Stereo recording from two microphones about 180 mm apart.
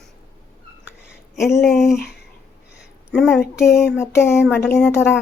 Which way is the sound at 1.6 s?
Centre (ahead or behind).